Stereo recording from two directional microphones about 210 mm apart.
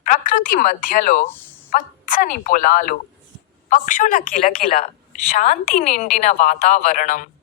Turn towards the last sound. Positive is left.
turn(degrees=40)  # may be behind; listen again after turning